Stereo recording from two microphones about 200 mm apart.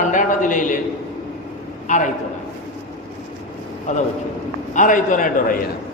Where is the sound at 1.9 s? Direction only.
40° left (ahead or behind).